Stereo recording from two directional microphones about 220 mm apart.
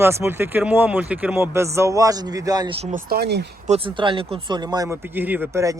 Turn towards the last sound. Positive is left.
turn(degrees=-15)  # may be behind; listen again after turning